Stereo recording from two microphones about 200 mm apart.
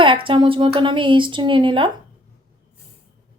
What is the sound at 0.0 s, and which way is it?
A woman's voice, 25° right (ahead or behind).